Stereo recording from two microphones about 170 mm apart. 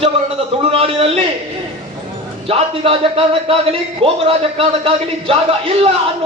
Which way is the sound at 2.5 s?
35° right (ahead or behind).